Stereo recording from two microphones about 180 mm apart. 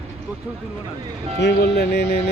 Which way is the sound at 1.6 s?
65° left (ahead or behind).